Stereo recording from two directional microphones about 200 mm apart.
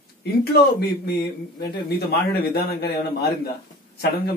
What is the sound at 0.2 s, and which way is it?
Speech, 50° left (ahead or behind).